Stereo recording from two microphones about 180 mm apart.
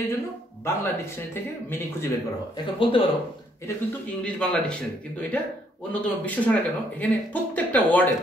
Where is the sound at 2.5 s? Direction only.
30° left (ahead or behind).